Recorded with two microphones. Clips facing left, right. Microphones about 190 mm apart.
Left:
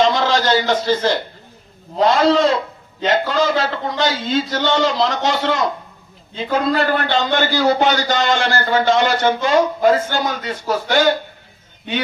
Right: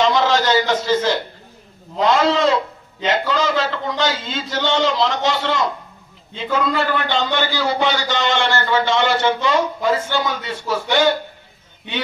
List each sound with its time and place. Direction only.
0.0 s a man's voice: 35° left (ahead or behind)